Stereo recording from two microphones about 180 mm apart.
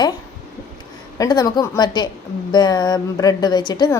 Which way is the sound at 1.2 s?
20° left (ahead or behind).